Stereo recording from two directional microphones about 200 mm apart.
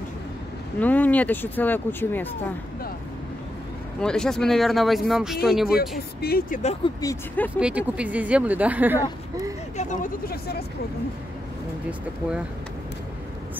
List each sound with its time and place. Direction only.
0.7 s speech: 10° left (ahead or behind)
4.0 s speech: 5° left (ahead or behind)
5.7 s speech: 50° left (ahead or behind)
7.0 s speech: 10° left (ahead or behind)
7.5 s speech: 5° right (ahead or behind)
9.8 s speech: 40° left (ahead or behind)